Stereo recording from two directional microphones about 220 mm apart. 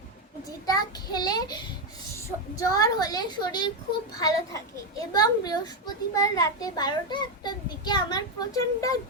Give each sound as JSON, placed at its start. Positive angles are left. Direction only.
{"t": 0.6, "sound": "a child's voice", "side_deg": 15}